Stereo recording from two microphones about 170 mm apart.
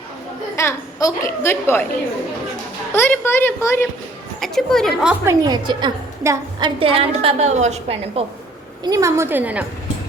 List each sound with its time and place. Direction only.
0.5 s a woman's voice: 20° left (ahead or behind)
2.9 s a woman's voice: 15° left (ahead or behind)
4.4 s a woman's voice: centre (ahead or behind)
5.2 s a woman's voice: 20° right (ahead or behind); by 8.2 s 40° right (ahead or behind)
8.8 s a woman's voice: 20° right (ahead or behind)